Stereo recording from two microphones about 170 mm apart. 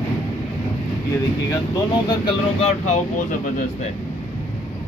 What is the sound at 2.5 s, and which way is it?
Speech, 40° left (ahead or behind).